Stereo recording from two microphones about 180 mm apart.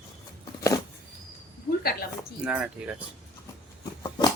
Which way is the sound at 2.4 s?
5° right (ahead or behind).